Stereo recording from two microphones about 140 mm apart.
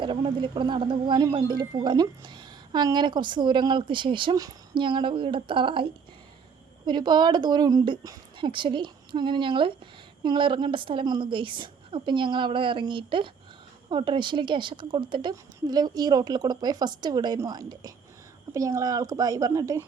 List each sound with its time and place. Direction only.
0.0 s speech: 35° right (ahead or behind)